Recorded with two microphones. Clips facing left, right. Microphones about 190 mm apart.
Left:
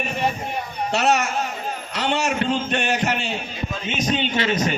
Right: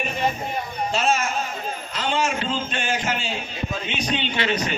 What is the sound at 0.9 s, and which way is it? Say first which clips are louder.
A man's voice: left 3 dB; 70° left (ahead or behind).